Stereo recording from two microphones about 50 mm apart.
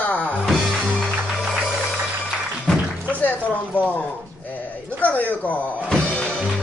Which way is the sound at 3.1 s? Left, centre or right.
Left.